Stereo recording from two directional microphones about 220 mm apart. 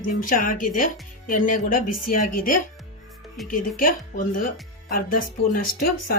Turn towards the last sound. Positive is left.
turn(degrees=40)  # may be behind; listen again after turning